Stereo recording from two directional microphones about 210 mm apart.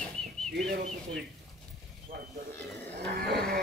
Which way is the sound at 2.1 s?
40° right (ahead or behind).